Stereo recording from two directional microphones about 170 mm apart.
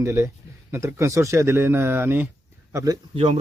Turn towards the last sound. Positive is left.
turn(degrees=-35)  # may be behind; listen again after turning